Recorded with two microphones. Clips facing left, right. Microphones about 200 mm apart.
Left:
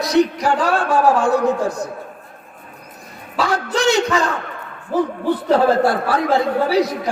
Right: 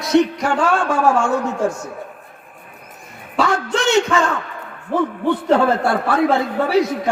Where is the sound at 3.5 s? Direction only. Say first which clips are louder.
Left 3 dB; 35° left (ahead or behind).